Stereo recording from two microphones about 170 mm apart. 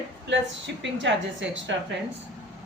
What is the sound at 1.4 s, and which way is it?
Speech, 90° right.